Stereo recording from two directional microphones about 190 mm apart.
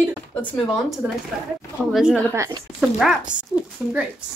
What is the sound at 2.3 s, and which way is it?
Speech, 15° right (ahead or behind).